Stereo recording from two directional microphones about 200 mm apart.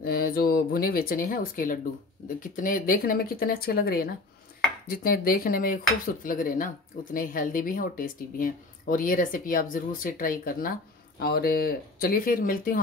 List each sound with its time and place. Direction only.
0.0 s speech: 50° left (ahead or behind)